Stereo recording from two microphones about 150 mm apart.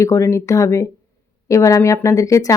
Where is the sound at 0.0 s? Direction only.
20° left (ahead or behind).